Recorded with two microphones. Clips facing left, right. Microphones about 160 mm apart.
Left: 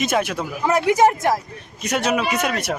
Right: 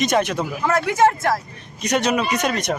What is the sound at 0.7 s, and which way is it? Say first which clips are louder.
Speech: left 2 dB; 15° left (ahead or behind).